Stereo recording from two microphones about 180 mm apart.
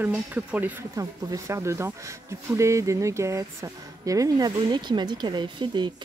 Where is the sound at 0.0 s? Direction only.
10° right (ahead or behind).